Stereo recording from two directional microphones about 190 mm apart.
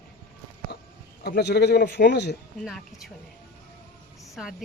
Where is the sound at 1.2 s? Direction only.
60° left (ahead or behind).